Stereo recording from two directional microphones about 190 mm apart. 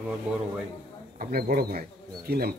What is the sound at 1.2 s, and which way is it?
Speech, 50° right (ahead or behind).